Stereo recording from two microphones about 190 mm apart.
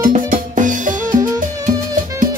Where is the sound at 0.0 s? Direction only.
45° right (ahead or behind).